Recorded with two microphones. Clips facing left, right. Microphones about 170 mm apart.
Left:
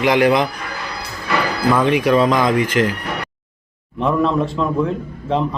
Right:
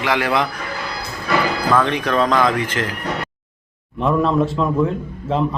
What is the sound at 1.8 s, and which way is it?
Speech, 10° left (ahead or behind).